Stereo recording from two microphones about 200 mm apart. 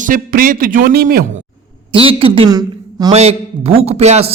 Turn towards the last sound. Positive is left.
turn(degrees=-30)  # may be behind; listen again after turning